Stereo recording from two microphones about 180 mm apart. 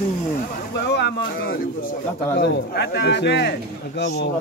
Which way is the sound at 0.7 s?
70° left (ahead or behind).